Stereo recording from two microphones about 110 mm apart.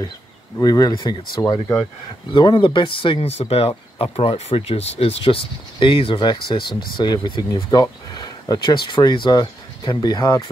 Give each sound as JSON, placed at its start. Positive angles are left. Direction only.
{"t": 0.6, "sound": "speech", "side_deg": 35}
{"t": 0.9, "sound": "speech", "side_deg": 45}
{"t": 1.4, "sound": "speech", "side_deg": 25}
{"t": 2.3, "sound": "speech", "side_deg": 45}